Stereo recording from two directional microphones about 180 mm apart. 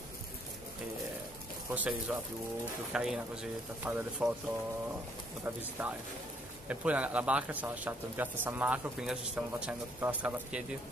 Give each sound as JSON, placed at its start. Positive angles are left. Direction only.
{"t": 1.7, "sound": "a man's voice", "side_deg": -10}
{"t": 5.4, "sound": "a man's voice", "side_deg": -10}